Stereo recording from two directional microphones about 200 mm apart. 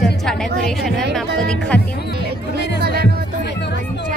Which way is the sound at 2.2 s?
55° right (ahead or behind).